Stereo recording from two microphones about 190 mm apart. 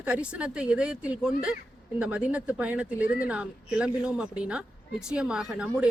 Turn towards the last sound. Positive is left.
turn(degrees=-5)  # may be behind; listen again after turning